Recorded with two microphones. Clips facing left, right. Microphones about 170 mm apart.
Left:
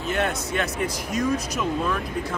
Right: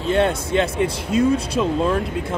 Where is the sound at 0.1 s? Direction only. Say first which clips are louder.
Right 8 dB; 25° right (ahead or behind).